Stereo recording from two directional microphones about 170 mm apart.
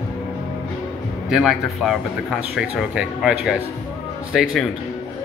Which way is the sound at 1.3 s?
5° right (ahead or behind).